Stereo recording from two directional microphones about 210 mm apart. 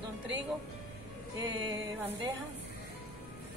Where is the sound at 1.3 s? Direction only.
15° right (ahead or behind).